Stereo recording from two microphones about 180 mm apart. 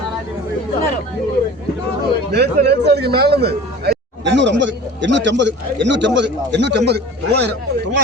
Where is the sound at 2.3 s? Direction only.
65° right (ahead or behind).